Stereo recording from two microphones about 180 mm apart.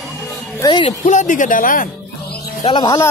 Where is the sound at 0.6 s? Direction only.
20° left (ahead or behind).